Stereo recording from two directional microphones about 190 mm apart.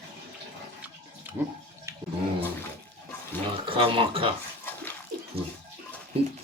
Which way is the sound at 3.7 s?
30° right (ahead or behind).